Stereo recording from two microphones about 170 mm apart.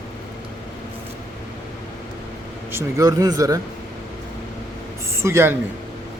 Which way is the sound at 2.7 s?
15° right (ahead or behind).